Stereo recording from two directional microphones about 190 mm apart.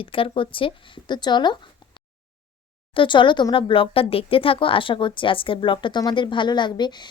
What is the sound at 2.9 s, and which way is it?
Speech, 25° left (ahead or behind).